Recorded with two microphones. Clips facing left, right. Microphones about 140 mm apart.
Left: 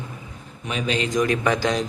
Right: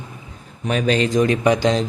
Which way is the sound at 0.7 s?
40° right (ahead or behind).